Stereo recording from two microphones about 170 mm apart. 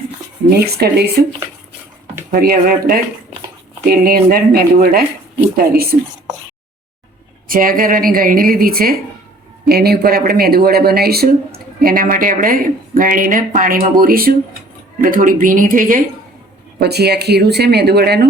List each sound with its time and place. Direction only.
0.6 s speech: 70° right (ahead or behind)
2.3 s a woman's voice: 55° right (ahead or behind)
7.4 s a woman's voice: 55° right (ahead or behind)
16.8 s speech: 70° right (ahead or behind)